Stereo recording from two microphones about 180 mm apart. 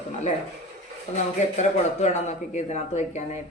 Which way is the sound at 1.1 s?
40° left (ahead or behind).